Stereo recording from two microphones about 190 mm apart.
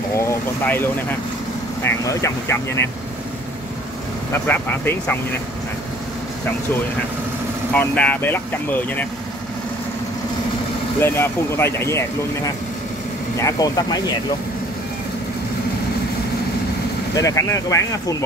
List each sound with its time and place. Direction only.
0.1 s speech: 15° left (ahead or behind)
4.3 s speech: 10° left (ahead or behind)
7.7 s speech: 10° left (ahead or behind)
11.0 s speech: 10° left (ahead or behind)
13.4 s speech: 20° left (ahead or behind)
17.1 s speech: 15° left (ahead or behind)